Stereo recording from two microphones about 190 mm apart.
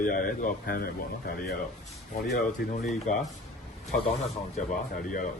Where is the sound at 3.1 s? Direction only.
40° left (ahead or behind).